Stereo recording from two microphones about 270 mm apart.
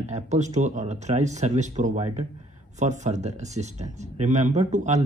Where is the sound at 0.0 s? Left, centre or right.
Right.